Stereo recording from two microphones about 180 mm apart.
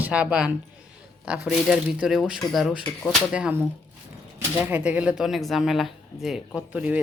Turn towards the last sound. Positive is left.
turn(degrees=-5)  # may be behind; listen again after turning